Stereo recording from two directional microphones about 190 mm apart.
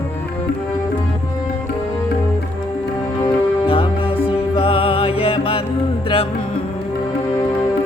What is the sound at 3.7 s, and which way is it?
Music, 25° left (ahead or behind).